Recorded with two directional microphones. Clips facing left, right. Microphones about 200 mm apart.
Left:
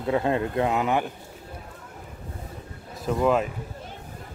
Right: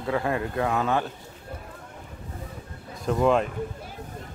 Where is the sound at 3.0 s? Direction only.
5° left (ahead or behind).